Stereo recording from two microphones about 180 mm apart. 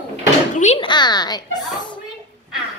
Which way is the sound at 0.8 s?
25° left (ahead or behind).